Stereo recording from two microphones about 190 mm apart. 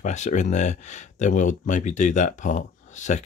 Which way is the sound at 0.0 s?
40° left (ahead or behind).